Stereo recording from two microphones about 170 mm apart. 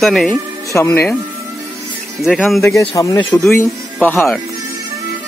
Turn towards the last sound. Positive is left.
turn(degrees=10)  # may be behind; listen again after turning